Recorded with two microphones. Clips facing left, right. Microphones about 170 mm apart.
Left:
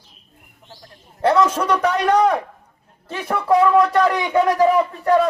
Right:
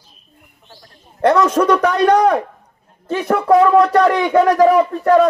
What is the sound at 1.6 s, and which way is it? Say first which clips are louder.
Speech: right 8 dB; 55° right (ahead or behind).